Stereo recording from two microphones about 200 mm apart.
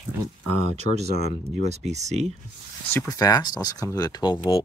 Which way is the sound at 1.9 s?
35° right (ahead or behind).